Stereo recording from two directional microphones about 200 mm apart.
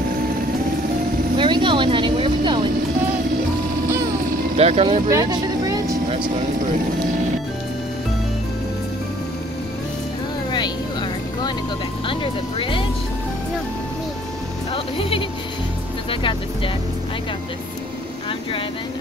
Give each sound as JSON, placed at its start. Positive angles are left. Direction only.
{"t": 1.3, "sound": "vehicle", "side_deg": -25}
{"t": 4.6, "sound": "speech", "side_deg": -30}
{"t": 5.1, "sound": "vehicle", "side_deg": -20}
{"t": 10.5, "sound": "vehicle", "side_deg": 20}
{"t": 14.7, "sound": "music", "side_deg": 25}